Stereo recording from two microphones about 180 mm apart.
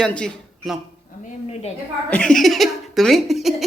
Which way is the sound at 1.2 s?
35° left (ahead or behind).